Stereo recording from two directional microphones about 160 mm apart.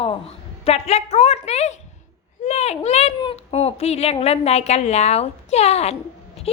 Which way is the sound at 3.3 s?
40° left (ahead or behind).